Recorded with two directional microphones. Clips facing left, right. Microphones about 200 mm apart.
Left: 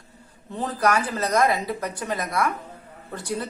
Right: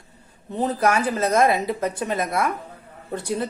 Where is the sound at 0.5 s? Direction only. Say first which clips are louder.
Right 2 dB; 20° right (ahead or behind).